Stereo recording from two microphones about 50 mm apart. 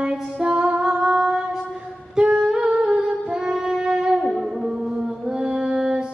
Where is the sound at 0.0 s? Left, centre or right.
Centre.